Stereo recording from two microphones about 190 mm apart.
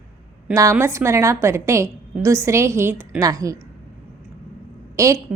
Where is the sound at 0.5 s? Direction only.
15° right (ahead or behind).